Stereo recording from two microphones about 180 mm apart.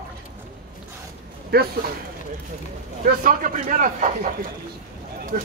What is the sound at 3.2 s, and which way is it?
Speech, 50° right (ahead or behind).